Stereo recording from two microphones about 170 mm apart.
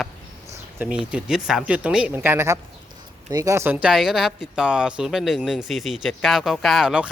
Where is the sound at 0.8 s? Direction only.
5° right (ahead or behind).